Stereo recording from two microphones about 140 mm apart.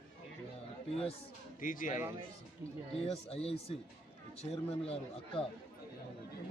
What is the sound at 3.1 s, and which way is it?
A man's voice, 45° left (ahead or behind).